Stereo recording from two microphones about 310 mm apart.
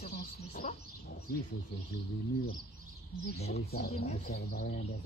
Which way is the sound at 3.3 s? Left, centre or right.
Centre.